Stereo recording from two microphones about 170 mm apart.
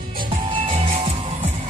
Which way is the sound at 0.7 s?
35° right (ahead or behind).